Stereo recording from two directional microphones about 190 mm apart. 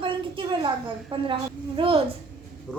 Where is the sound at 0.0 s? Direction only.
25° right (ahead or behind).